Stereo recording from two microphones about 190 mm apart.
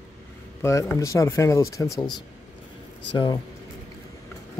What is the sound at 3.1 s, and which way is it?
Speech, 25° left (ahead or behind).